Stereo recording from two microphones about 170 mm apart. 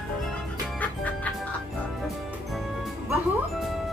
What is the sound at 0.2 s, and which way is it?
Music, centre (ahead or behind).